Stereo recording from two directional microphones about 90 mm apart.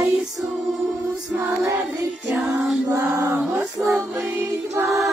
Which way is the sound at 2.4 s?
5° right (ahead or behind).